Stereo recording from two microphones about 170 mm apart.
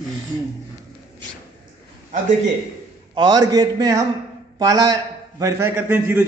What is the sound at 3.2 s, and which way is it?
A man's voice, 25° right (ahead or behind).